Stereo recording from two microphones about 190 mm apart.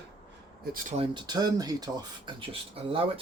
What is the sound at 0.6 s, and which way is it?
Speech, 50° right (ahead or behind).